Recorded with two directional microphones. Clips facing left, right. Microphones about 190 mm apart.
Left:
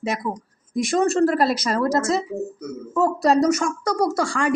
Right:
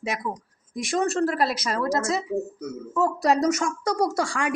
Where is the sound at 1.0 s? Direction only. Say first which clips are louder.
Left 5 dB; 40° left (ahead or behind).